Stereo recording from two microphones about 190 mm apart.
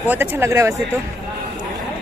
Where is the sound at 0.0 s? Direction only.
10° right (ahead or behind).